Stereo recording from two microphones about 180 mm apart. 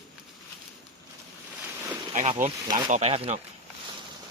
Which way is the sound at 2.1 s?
40° right (ahead or behind).